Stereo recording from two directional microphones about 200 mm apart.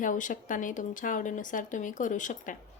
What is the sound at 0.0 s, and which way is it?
A woman's voice, 40° left (ahead or behind).